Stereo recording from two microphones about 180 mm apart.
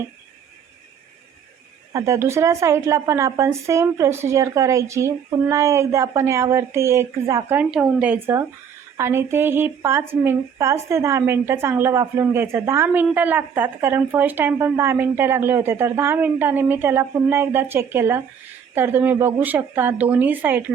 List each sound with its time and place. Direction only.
1.9 s a woman's voice: 15° right (ahead or behind)
7.6 s a woman's voice: 5° right (ahead or behind)